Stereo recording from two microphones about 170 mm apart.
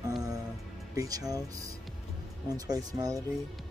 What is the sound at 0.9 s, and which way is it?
Speech, 20° right (ahead or behind).